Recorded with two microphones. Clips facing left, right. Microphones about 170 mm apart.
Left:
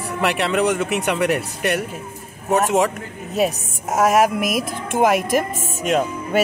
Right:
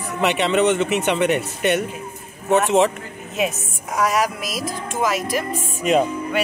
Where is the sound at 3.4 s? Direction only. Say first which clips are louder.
Left 3 dB; 40° left (ahead or behind).